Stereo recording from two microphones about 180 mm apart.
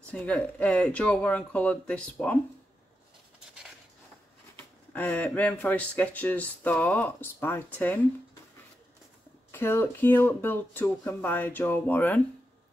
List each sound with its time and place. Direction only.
0.0 s speech: 10° left (ahead or behind)
4.6 s speech: 10° left (ahead or behind)
9.5 s speech: 15° left (ahead or behind)